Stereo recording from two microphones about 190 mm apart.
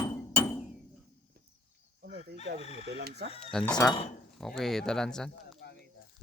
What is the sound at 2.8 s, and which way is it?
Speech, 60° right (ahead or behind).